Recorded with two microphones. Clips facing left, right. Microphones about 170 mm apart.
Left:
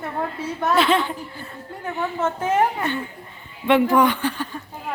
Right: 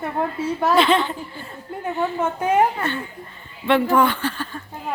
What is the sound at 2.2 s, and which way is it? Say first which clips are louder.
Speech: right 1 dB; 15° right (ahead or behind).